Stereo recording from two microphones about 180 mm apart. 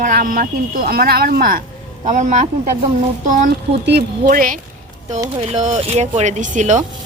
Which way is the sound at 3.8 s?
60° right (ahead or behind).